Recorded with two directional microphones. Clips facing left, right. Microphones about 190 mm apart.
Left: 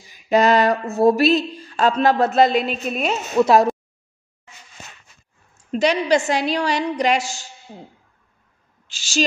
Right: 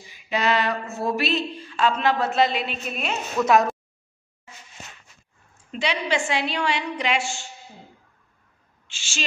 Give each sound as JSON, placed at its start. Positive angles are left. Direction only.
{"t": 0.1, "sound": "speech", "side_deg": 40}
{"t": 5.7, "sound": "speech", "side_deg": 45}
{"t": 8.8, "sound": "speech", "side_deg": 40}